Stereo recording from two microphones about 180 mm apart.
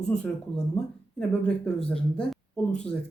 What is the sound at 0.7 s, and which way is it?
Speech, 5° left (ahead or behind).